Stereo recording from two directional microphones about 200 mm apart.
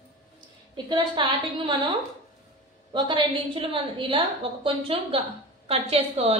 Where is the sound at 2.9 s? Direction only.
25° right (ahead or behind).